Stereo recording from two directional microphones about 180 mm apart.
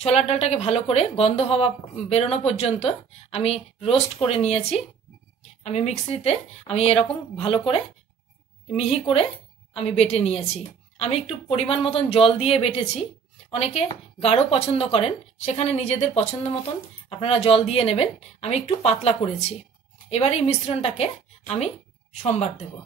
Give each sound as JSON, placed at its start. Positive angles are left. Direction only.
{"t": 0.0, "sound": "a woman's voice", "side_deg": 35}